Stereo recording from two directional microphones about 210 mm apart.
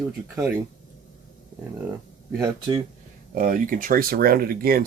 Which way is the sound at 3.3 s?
40° right (ahead or behind).